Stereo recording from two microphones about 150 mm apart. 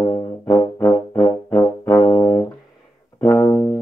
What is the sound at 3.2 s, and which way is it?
Brass instrument, 25° left (ahead or behind).